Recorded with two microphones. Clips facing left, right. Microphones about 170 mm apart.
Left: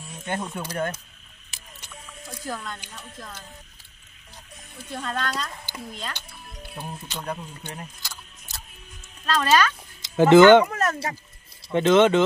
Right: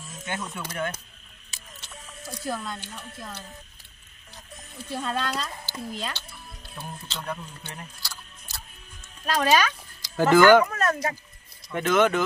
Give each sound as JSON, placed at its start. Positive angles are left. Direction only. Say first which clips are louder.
{"t": 0.4, "sound": "speech", "louder": "left 2 dB", "side_deg": 35}
{"t": 2.5, "sound": "speech", "louder": "right 1 dB", "side_deg": -10}
{"t": 4.9, "sound": "speech", "louder": "right 1 dB", "side_deg": -10}
{"t": 6.1, "sound": "speech", "louder": "left 1 dB", "side_deg": 15}
{"t": 8.0, "sound": "a sound", "louder": "even", "side_deg": 15}
{"t": 9.2, "sound": "speech", "louder": "left 1 dB", "side_deg": -10}
{"t": 10.0, "sound": "speech", "louder": "left 4 dB", "side_deg": 20}